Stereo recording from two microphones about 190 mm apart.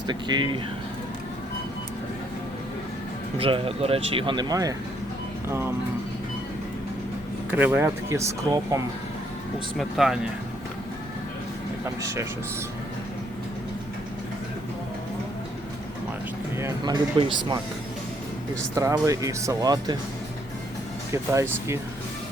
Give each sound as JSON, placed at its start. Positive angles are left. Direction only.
{"t": 0.1, "sound": "speech", "side_deg": -25}
{"t": 3.3, "sound": "speech", "side_deg": -30}
{"t": 7.5, "sound": "speech", "side_deg": -10}
{"t": 9.7, "sound": "speech", "side_deg": 0}
{"t": 16.6, "sound": "speech", "side_deg": -20}
{"t": 18.7, "sound": "speech", "side_deg": -15}
{"t": 21.1, "sound": "speech", "side_deg": -15}